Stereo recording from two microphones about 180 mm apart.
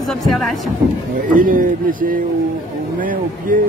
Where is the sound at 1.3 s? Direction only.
50° right (ahead or behind).